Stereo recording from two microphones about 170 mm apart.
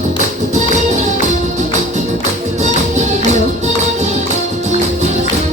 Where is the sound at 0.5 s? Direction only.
45° right (ahead or behind).